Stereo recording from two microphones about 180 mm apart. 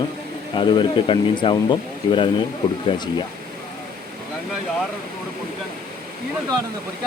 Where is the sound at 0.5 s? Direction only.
25° left (ahead or behind).